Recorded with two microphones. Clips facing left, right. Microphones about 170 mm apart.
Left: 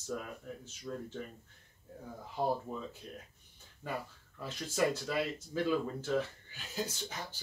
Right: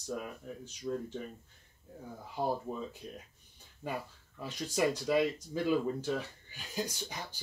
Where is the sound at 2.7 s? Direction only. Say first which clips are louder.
Right 2 dB; 20° right (ahead or behind).